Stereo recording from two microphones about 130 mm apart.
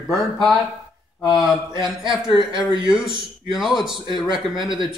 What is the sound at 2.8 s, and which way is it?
Mantra, 5° right (ahead or behind).